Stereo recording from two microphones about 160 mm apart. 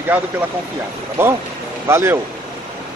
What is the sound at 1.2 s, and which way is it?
Speech, 15° right (ahead or behind).